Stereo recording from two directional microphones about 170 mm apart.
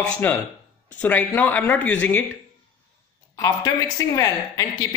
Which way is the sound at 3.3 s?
20° left (ahead or behind).